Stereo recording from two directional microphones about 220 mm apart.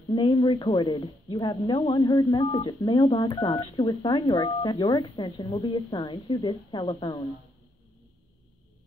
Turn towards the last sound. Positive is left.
turn(degrees=20)  # may be behind; listen again after turning